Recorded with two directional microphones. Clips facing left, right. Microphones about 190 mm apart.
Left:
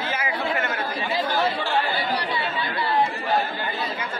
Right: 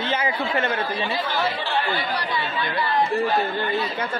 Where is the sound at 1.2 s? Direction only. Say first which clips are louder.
Left 2 dB; 45° left (ahead or behind).